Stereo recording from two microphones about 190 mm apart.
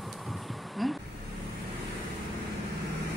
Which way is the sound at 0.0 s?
Centre (ahead or behind).